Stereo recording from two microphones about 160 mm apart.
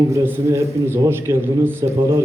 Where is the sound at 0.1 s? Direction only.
15° right (ahead or behind).